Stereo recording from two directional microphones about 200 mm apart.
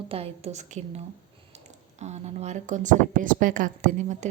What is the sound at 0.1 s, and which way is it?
Speech, 30° right (ahead or behind).